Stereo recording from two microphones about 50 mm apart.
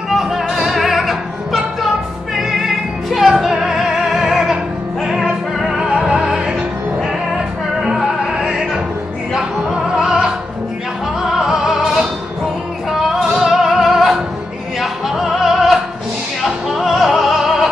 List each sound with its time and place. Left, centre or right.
0.1 s music: centre
5.8 s music: centre
7.8 s music: centre
9.9 s opera: centre
11.3 s music: centre
13.1 s music: centre